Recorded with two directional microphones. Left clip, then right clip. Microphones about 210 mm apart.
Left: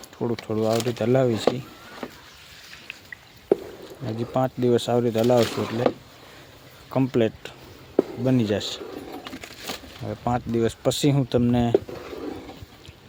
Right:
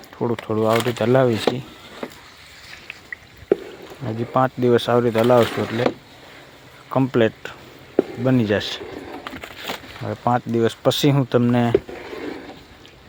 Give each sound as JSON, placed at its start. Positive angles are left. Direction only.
{"t": 0.2, "sound": "speech", "side_deg": -5}
{"t": 4.0, "sound": "speech", "side_deg": 0}
{"t": 6.9, "sound": "speech", "side_deg": 0}
{"t": 9.2, "sound": "a sound", "side_deg": 20}
{"t": 10.0, "sound": "speech", "side_deg": 0}